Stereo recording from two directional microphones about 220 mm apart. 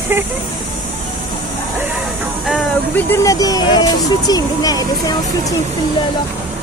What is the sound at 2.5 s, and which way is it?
Speech, 5° left (ahead or behind).